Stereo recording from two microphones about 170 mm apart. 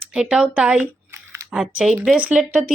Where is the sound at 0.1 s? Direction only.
5° right (ahead or behind).